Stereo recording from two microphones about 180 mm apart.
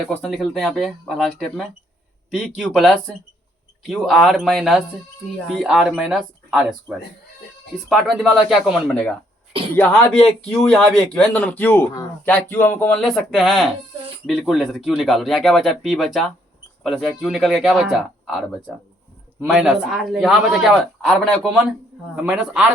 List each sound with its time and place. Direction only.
0.1 s a man's voice: 5° left (ahead or behind)
9.5 s a sound: 30° right (ahead or behind)
9.7 s a man's voice: 5° left (ahead or behind)